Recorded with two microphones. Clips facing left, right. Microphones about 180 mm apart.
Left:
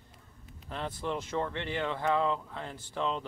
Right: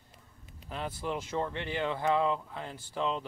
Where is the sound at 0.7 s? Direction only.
5° right (ahead or behind).